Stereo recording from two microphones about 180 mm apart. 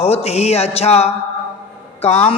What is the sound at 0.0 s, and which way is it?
A man's voice, 35° left (ahead or behind).